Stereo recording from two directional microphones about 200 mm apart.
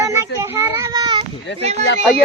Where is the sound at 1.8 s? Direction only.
60° left (ahead or behind).